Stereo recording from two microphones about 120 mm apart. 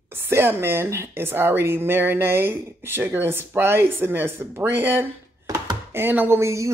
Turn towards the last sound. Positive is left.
turn(degrees=-25)  # may be behind; listen again after turning